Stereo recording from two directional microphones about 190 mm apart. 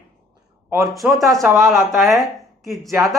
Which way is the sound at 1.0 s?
15° right (ahead or behind).